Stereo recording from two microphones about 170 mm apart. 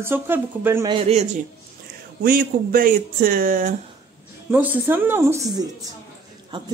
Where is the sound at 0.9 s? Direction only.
35° right (ahead or behind).